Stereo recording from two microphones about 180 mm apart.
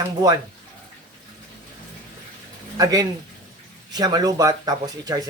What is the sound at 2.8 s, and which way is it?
Speech, 20° right (ahead or behind).